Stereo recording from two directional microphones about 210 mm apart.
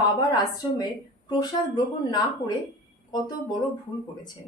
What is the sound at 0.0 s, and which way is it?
A woman's voice, 20° left (ahead or behind).